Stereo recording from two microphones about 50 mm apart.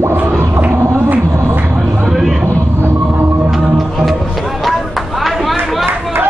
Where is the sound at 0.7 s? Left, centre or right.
Right.